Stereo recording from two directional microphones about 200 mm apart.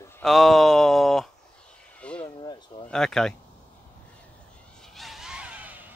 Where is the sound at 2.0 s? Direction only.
5° left (ahead or behind).